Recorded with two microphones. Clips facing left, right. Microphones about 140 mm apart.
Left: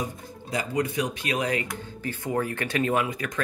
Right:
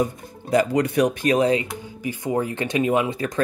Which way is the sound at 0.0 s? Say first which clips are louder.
Right 9 dB; 60° right (ahead or behind).